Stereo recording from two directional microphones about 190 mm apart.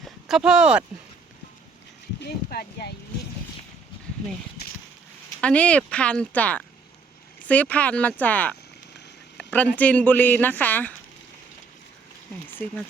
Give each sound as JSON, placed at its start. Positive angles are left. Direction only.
{"t": 0.3, "sound": "speech", "side_deg": -5}
{"t": 2.2, "sound": "speech", "side_deg": 55}
{"t": 5.4, "sound": "speech", "side_deg": 5}